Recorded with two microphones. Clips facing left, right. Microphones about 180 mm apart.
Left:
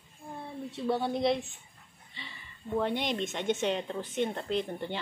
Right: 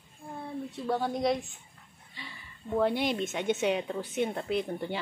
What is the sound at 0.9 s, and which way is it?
Speech, centre (ahead or behind).